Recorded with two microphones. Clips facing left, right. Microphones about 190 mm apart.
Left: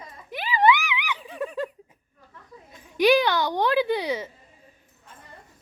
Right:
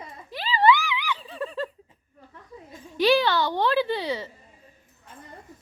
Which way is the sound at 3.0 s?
15° left (ahead or behind).